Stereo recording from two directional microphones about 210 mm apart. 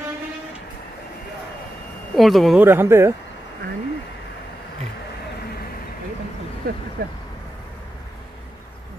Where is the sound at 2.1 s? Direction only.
Centre (ahead or behind).